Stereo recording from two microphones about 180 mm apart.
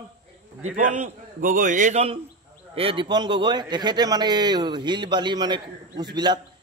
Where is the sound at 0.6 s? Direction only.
40° right (ahead or behind).